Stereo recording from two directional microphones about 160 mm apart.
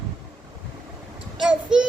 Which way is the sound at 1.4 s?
5° right (ahead or behind).